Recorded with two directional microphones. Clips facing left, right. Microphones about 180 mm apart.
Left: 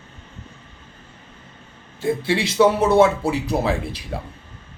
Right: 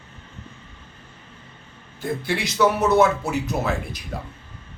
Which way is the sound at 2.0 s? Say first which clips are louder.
Left 5 dB; 30° left (ahead or behind).